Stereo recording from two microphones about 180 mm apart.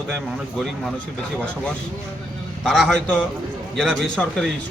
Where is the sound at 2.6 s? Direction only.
Centre (ahead or behind).